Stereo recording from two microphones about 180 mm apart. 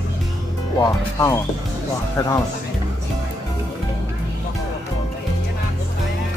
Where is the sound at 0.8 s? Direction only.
20° left (ahead or behind).